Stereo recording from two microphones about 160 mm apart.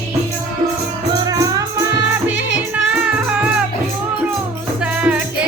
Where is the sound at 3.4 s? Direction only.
5° right (ahead or behind).